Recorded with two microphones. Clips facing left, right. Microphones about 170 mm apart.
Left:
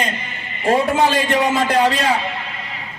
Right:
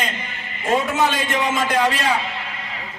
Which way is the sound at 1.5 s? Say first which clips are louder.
Left 3 dB; 30° left (ahead or behind).